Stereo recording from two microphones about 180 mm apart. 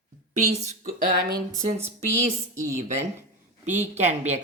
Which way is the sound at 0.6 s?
50° right (ahead or behind).